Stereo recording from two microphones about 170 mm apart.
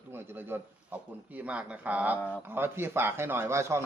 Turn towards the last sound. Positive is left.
turn(degrees=-15)  # may be behind; listen again after turning